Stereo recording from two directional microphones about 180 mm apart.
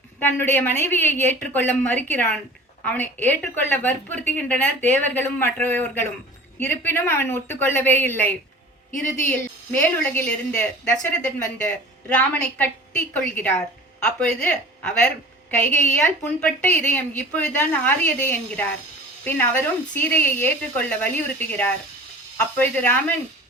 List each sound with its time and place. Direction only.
0.2 s a woman's voice: 10° left (ahead or behind)
8.9 s speech: 45° left (ahead or behind)
9.8 s a woman's voice: 10° left (ahead or behind)